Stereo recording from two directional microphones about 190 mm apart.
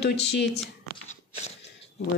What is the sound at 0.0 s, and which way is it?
Speech, 60° left (ahead or behind).